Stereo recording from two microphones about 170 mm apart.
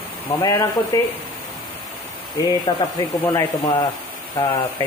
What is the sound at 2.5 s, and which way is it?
Speech, 25° left (ahead or behind).